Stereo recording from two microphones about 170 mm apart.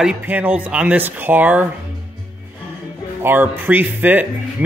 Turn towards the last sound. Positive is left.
turn(degrees=-10)  # may be behind; listen again after turning